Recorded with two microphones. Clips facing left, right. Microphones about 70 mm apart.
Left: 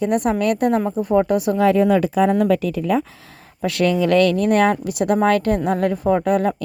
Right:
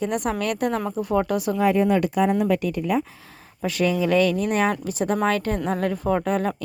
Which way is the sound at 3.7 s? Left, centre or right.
Left.